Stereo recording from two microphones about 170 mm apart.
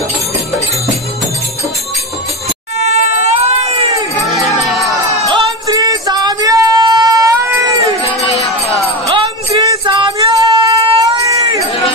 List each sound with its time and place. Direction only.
2.8 s baby cry: 40° right (ahead or behind)
5.3 s music: 25° right (ahead or behind)
11.0 s a sound: 20° right (ahead or behind)